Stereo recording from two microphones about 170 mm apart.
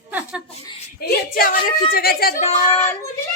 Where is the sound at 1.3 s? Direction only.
55° left (ahead or behind).